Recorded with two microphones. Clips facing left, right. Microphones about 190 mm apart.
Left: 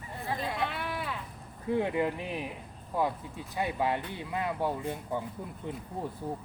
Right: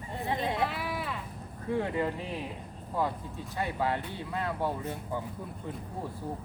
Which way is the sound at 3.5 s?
15° left (ahead or behind).